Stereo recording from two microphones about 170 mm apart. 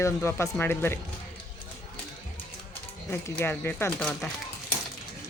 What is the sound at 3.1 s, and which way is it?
Speech, 10° left (ahead or behind).